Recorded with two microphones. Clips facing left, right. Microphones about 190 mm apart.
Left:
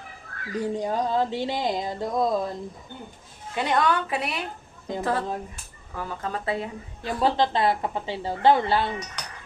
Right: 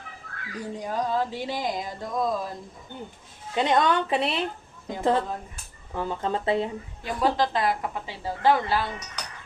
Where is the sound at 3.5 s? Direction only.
20° right (ahead or behind).